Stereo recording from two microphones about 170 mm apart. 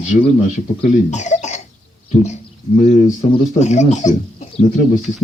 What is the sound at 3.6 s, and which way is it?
Speech, 40° left (ahead or behind).